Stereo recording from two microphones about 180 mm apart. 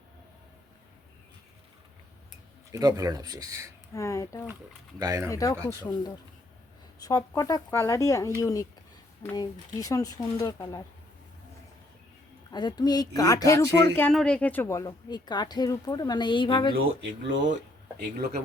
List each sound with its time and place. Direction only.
2.7 s speech: 20° right (ahead or behind)
3.9 s speech: 15° left (ahead or behind)
4.9 s speech: 20° right (ahead or behind)
5.3 s a woman's voice: 20° left (ahead or behind)
7.0 s a woman's voice: 20° left (ahead or behind)
12.5 s a woman's voice: 25° left (ahead or behind)
14.1 s a woman's voice: 5° left (ahead or behind); by 16.7 s 25° left (ahead or behind)
16.7 s speech: 90° right